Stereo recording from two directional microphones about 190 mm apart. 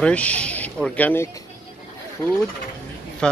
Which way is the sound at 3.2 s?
5° left (ahead or behind).